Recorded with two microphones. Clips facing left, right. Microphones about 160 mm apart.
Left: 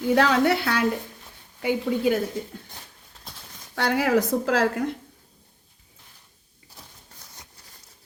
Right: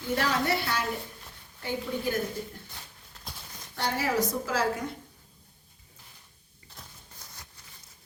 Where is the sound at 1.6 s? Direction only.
80° left.